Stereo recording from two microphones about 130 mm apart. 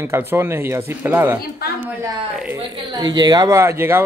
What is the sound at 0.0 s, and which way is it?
A woman's voice, 20° right (ahead or behind).